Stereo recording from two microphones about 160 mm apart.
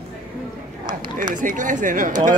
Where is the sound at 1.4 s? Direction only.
55° right (ahead or behind).